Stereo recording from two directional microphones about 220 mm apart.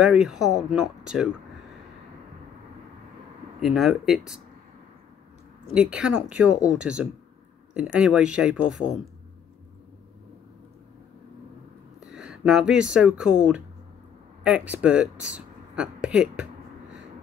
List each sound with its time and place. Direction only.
0.0 s speech: 5° right (ahead or behind)
3.6 s speech: centre (ahead or behind)
5.8 s speech: 5° right (ahead or behind)
12.1 s speech: 5° right (ahead or behind)